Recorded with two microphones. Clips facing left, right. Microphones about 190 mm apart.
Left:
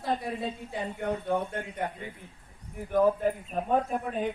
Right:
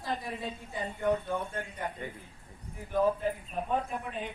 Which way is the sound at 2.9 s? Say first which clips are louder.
Left 4 dB; 50° left (ahead or behind).